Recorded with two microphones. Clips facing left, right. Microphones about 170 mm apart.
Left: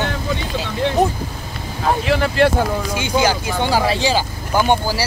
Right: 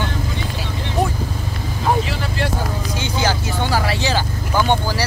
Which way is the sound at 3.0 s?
10° left (ahead or behind).